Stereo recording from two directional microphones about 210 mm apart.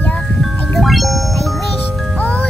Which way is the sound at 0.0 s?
5° left (ahead or behind).